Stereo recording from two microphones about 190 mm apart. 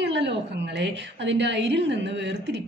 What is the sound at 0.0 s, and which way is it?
A woman's voice, 65° right (ahead or behind).